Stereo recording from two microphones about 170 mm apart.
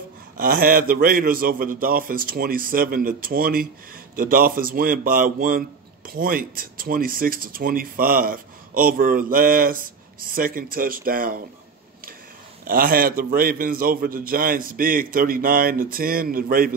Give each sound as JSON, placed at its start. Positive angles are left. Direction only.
{"t": 0.4, "sound": "speech", "side_deg": -55}
{"t": 12.6, "sound": "speech", "side_deg": -60}